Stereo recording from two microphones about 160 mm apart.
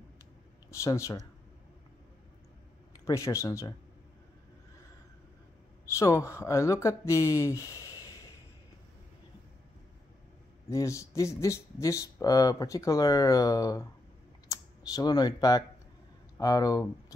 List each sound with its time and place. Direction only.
0.7 s speech: 20° left (ahead or behind)
3.1 s speech: 20° left (ahead or behind)
5.9 s speech: 20° left (ahead or behind)
10.7 s speech: 20° left (ahead or behind)